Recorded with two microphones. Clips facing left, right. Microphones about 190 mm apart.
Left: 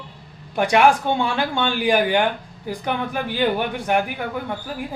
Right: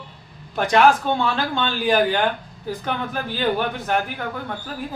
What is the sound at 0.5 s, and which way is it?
Speech, 10° left (ahead or behind).